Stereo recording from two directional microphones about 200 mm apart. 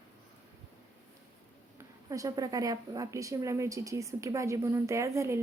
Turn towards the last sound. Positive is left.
turn(degrees=-15)  # may be behind; listen again after turning